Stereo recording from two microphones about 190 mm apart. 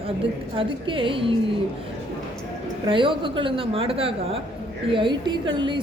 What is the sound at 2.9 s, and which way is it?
A woman's voice, 25° right (ahead or behind).